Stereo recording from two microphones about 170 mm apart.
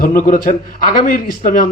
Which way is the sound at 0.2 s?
50° left (ahead or behind).